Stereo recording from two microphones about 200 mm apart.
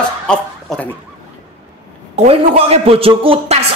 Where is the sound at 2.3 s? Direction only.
30° right (ahead or behind).